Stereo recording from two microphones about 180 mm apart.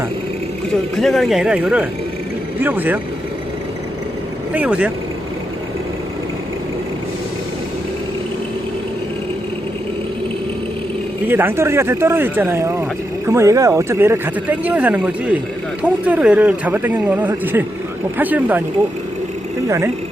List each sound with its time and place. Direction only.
0.9 s speech: centre (ahead or behind)
4.5 s speech: 10° right (ahead or behind)
11.3 s speech: 10° right (ahead or behind)
19.6 s speech: 15° right (ahead or behind)